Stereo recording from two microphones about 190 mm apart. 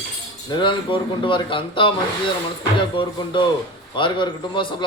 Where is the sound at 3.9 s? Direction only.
25° left (ahead or behind).